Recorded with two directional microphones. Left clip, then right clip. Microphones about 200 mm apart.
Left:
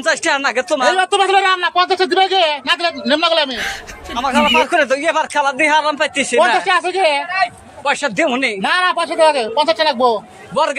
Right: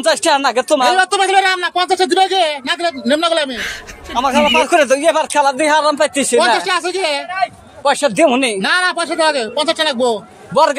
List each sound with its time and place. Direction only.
0.0 s speech: 30° right (ahead or behind)
0.9 s speech: 45° right (ahead or behind)
4.6 s speech: 30° right (ahead or behind)
6.7 s speech: 60° right (ahead or behind)
7.8 s speech: 25° right (ahead or behind)
8.6 s speech: 50° right (ahead or behind)
10.5 s a man's voice: 30° right (ahead or behind)